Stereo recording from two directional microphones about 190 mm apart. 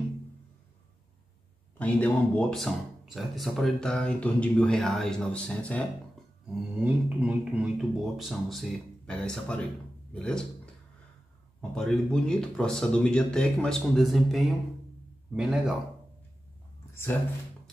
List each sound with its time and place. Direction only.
1.8 s speech: 10° left (ahead or behind)
6.8 s speech: 5° right (ahead or behind)
11.7 s speech: centre (ahead or behind)
16.9 s speech: 10° left (ahead or behind)